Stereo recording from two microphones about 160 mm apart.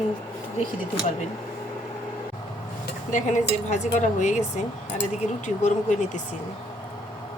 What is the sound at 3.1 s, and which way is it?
Speech, 50° left (ahead or behind).